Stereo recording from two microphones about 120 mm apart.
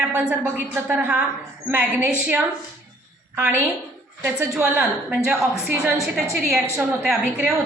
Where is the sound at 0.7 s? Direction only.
10° right (ahead or behind).